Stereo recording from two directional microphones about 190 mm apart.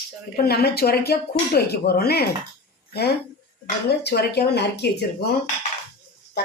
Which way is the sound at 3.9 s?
60° left (ahead or behind).